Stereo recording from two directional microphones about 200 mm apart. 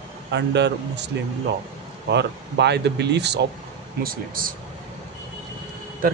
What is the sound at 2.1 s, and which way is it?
Speech, 60° right (ahead or behind).